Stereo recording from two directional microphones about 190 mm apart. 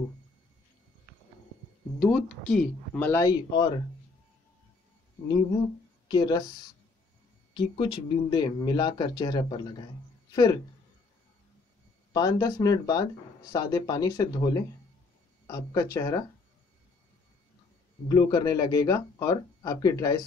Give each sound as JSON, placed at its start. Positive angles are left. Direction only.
{"t": 2.0, "sound": "speech", "side_deg": 0}
{"t": 6.0, "sound": "speech", "side_deg": 20}
{"t": 7.5, "sound": "speech", "side_deg": 25}
{"t": 12.1, "sound": "speech", "side_deg": 20}
{"t": 18.0, "sound": "speech", "side_deg": 20}